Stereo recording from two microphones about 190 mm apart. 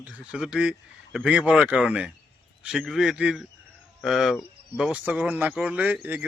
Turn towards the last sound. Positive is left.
turn(degrees=-10)  # may be behind; listen again after turning